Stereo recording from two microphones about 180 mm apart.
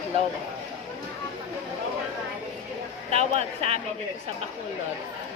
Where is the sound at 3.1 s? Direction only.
35° right (ahead or behind).